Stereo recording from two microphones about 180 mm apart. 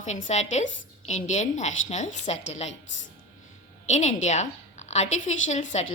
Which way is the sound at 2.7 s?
90° left.